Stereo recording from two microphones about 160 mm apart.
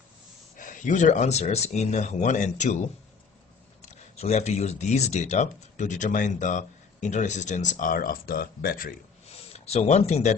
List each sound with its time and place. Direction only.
0.6 s speech: 55° left (ahead or behind)
3.8 s speech: 45° left (ahead or behind); by 8.9 s 60° left (ahead or behind)
9.5 s speech: 40° left (ahead or behind)